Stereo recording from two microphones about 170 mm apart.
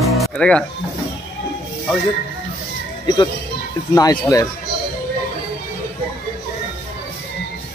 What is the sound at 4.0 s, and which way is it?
Speech, 20° left (ahead or behind).